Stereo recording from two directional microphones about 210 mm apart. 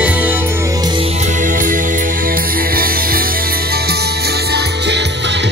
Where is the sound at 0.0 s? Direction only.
5° right (ahead or behind).